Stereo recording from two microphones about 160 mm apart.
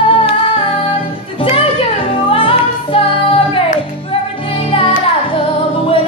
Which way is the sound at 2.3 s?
35° left (ahead or behind).